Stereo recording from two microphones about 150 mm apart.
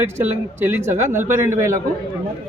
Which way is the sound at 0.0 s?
15° right (ahead or behind).